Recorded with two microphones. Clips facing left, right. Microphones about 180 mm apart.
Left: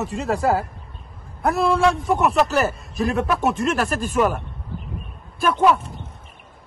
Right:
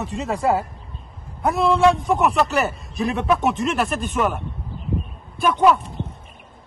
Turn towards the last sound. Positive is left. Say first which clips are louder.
# right 1 dB
turn(degrees=0)  # may be behind; listen again after turning